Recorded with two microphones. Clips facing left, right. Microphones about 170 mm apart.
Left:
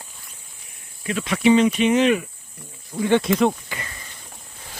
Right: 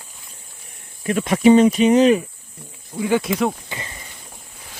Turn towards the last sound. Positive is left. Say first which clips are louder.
# right 1 dB
turn(degrees=-25)  # may be behind; listen again after turning